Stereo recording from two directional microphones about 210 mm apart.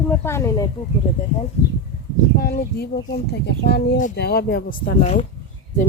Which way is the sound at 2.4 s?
45° left (ahead or behind).